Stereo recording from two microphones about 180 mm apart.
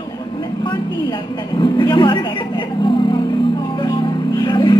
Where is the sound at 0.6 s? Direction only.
25° left (ahead or behind).